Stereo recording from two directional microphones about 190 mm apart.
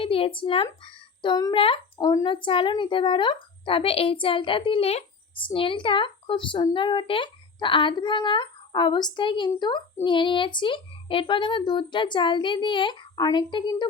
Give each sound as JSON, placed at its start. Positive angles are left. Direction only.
{"t": 0.0, "sound": "speech", "side_deg": 30}